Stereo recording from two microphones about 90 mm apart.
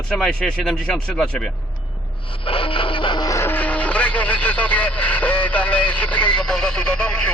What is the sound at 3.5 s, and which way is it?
Speech, 15° left (ahead or behind).